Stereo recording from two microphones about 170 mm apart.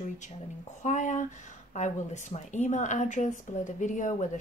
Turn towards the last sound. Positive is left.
turn(degrees=45)  # may be behind; listen again after turning